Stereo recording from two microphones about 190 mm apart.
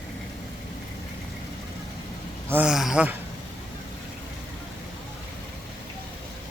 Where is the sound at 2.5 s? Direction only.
5° right (ahead or behind).